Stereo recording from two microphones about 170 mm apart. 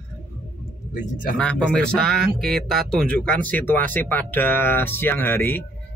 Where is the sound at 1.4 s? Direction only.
5° left (ahead or behind).